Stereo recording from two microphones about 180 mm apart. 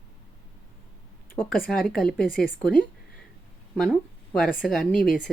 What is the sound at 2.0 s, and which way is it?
Speech, 5° left (ahead or behind).